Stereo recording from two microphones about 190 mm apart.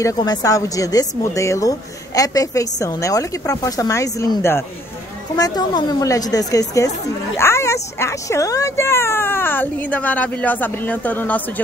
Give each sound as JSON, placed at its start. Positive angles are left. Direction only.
{"t": 0.0, "sound": "a woman's voice", "side_deg": 20}